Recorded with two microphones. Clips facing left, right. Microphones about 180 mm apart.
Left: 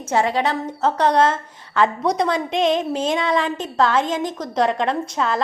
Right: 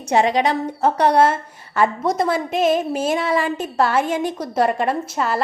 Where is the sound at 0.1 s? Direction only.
15° right (ahead or behind).